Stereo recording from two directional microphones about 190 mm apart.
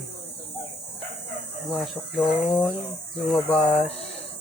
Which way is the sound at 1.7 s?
Centre (ahead or behind).